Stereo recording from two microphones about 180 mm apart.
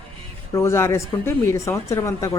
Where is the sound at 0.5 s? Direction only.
15° left (ahead or behind).